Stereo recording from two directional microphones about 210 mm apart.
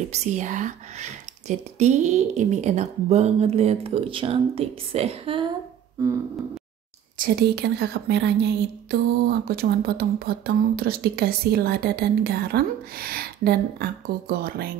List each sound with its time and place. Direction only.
0.1 s speech: 35° right (ahead or behind)
7.2 s speech: 50° right (ahead or behind)